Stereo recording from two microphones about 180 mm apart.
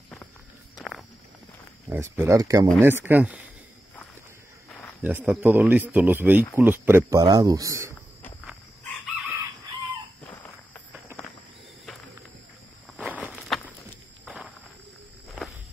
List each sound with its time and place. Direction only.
0.7 s walk: centre (ahead or behind)
1.9 s speech: 15° right (ahead or behind)
4.6 s cricket: 5° left (ahead or behind)
5.0 s speech: 5° right (ahead or behind)
13.2 s walk: centre (ahead or behind)